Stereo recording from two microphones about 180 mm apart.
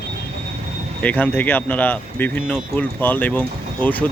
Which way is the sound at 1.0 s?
10° left (ahead or behind).